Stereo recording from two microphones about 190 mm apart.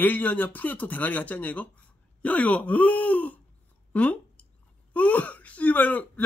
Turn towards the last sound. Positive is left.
turn(degrees=10)  # may be behind; listen again after turning